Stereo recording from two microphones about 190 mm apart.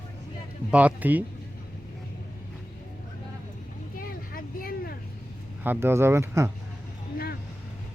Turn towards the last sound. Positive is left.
turn(degrees=-15)  # may be behind; listen again after turning